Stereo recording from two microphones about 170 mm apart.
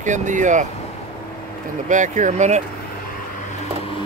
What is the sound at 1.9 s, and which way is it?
Speech, 45° right (ahead or behind).